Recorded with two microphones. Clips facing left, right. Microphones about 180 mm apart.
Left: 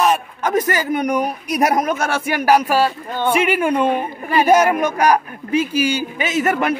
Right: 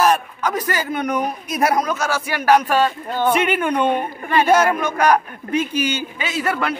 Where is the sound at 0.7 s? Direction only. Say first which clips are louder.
Left 3 dB; 15° left (ahead or behind).